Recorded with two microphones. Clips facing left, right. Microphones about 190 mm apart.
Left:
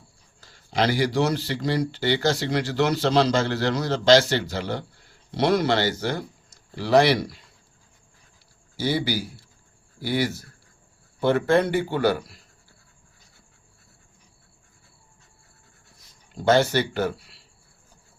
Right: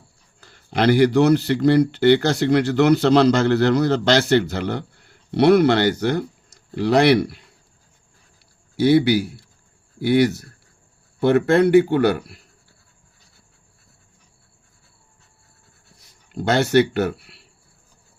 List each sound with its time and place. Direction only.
0.3 s speech: 60° right (ahead or behind)
8.7 s speech: 65° right (ahead or behind)
16.3 s speech: 65° right (ahead or behind)